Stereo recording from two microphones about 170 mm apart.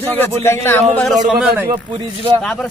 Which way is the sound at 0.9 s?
5° left (ahead or behind).